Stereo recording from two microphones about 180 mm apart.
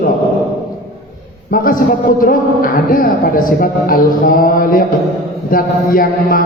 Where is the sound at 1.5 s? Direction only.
50° left (ahead or behind).